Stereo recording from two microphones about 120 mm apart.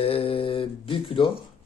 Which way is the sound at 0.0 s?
50° left (ahead or behind).